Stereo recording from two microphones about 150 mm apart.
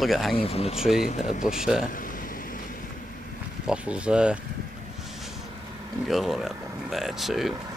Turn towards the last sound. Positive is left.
turn(degrees=0)  # may be behind; listen again after turning